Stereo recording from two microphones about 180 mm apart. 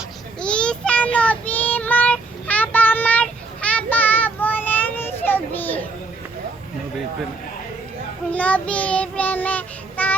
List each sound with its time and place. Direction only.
0.4 s child singing: 5° left (ahead or behind)
8.3 s child singing: 10° left (ahead or behind)